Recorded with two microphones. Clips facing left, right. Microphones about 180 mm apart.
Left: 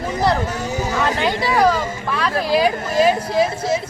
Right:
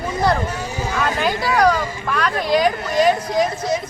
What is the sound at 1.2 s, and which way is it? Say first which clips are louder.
Speech: right 1 dB; centre (ahead or behind).